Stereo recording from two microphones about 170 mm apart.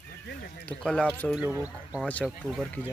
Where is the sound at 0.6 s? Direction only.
5° left (ahead or behind).